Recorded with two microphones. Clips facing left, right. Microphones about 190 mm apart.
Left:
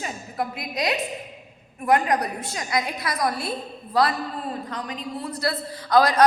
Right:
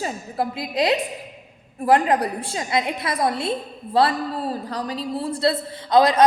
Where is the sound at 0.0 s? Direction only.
30° right (ahead or behind).